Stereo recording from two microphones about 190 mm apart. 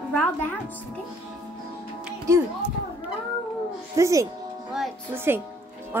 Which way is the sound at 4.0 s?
15° right (ahead or behind).